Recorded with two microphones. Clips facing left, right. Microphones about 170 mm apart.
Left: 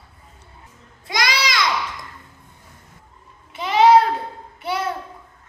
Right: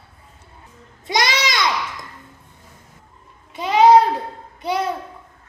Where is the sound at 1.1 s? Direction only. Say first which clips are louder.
Right 2 dB; 20° right (ahead or behind).